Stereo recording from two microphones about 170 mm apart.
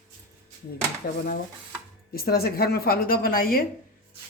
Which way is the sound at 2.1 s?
65° left (ahead or behind).